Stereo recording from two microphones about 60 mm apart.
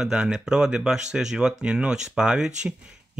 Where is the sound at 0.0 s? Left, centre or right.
Centre.